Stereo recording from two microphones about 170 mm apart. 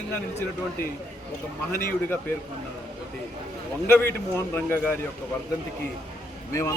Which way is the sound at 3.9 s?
15° left (ahead or behind).